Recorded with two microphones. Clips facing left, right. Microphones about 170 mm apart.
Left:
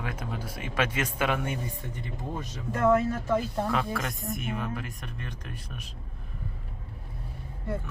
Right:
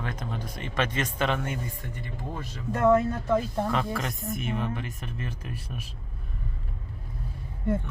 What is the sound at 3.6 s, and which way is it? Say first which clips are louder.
Speech: right 1 dB; centre (ahead or behind).